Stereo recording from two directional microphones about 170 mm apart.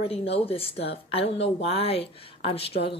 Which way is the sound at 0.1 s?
35° left (ahead or behind).